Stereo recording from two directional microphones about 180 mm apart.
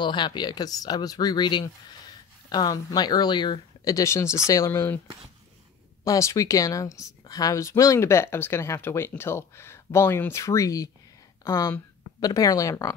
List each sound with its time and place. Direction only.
0.0 s speech: 25° left (ahead or behind)
6.0 s speech: 20° left (ahead or behind)